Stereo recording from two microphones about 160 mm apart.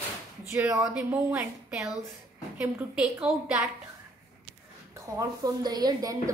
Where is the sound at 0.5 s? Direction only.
20° right (ahead or behind).